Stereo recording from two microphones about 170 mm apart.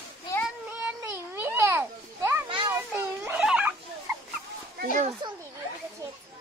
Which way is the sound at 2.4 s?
30° right (ahead or behind).